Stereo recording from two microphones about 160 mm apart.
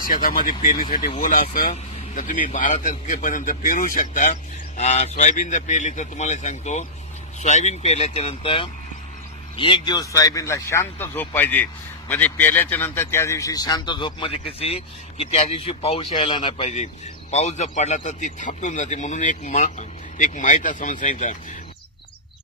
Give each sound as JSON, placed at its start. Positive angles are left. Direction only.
{"t": 0.0, "sound": "speech", "side_deg": 65}